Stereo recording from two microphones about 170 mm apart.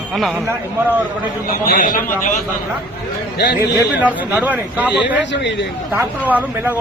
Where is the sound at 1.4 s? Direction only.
55° left (ahead or behind).